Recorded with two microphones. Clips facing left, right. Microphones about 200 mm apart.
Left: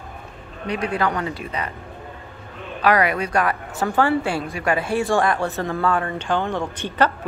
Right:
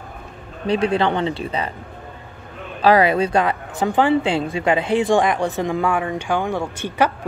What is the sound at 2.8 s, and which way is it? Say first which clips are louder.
A woman's voice: right 4 dB; 30° right (ahead or behind).